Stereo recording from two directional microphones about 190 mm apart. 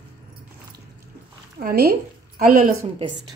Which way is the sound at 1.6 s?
50° right (ahead or behind).